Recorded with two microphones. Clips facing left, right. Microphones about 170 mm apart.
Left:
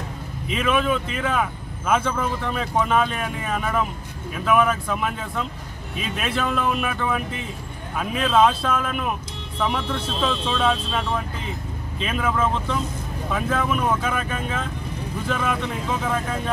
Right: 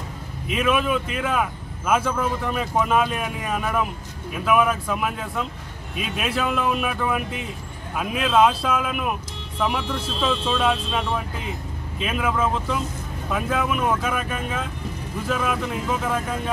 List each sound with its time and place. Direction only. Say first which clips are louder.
0.5 s speech: even; 5° right (ahead or behind)